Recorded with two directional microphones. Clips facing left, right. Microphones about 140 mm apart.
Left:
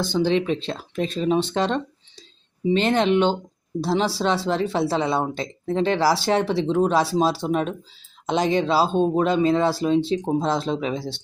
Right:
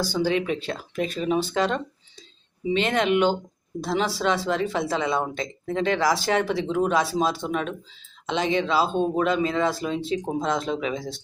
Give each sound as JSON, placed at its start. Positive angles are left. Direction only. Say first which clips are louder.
{"t": 0.0, "sound": "speech", "louder": "left 3 dB", "side_deg": 25}